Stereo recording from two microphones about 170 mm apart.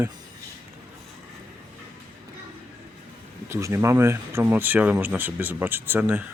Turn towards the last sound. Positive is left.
turn(degrees=-10)  # may be behind; listen again after turning